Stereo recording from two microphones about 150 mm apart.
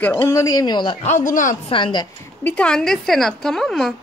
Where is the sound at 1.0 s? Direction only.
55° left (ahead or behind).